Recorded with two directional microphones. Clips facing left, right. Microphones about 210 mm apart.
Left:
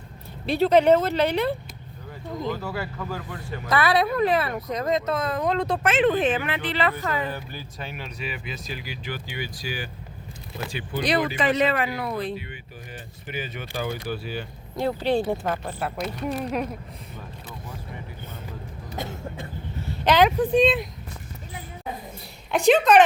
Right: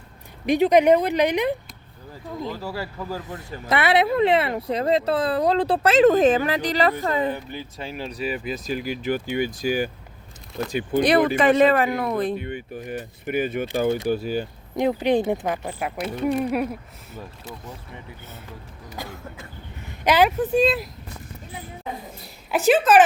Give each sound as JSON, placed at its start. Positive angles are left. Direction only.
{"t": 0.4, "sound": "speech", "side_deg": -15}
{"t": 2.4, "sound": "speech", "side_deg": -5}
{"t": 3.2, "sound": "speech", "side_deg": -25}
{"t": 7.3, "sound": "speech", "side_deg": -20}
{"t": 14.8, "sound": "speech", "side_deg": -15}
{"t": 16.0, "sound": "speech", "side_deg": -5}
{"t": 18.9, "sound": "cough", "side_deg": 25}
{"t": 19.9, "sound": "speech", "side_deg": -10}
{"t": 22.5, "sound": "speech", "side_deg": -5}